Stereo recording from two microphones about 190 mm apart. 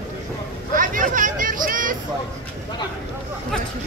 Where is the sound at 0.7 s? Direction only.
45° right (ahead or behind).